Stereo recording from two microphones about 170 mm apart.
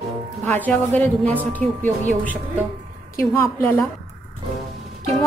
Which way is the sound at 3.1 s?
15° left (ahead or behind).